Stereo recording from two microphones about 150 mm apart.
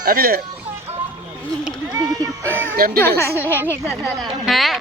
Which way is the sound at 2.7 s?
80° right.